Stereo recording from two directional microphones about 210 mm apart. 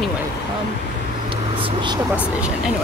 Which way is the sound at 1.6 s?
20° right (ahead or behind).